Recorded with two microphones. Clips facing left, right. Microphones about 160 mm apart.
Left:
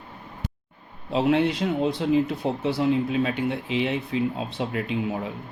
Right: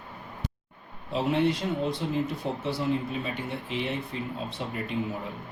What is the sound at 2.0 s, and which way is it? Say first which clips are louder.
Speech: left 7 dB; 90° left.